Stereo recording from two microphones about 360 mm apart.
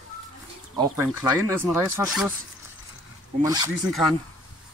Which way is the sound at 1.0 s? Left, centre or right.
Centre.